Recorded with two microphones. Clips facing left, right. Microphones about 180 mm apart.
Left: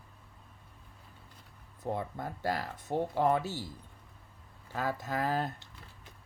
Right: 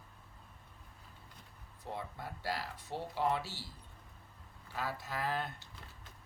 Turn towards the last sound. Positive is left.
turn(degrees=40)  # may be behind; listen again after turning